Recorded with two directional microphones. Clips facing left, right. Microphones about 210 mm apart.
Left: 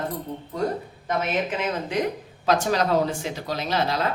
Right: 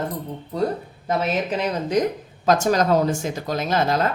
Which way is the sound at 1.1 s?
35° right (ahead or behind).